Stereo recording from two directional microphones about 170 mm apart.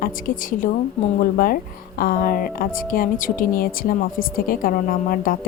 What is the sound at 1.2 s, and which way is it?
A woman's voice, 60° left (ahead or behind).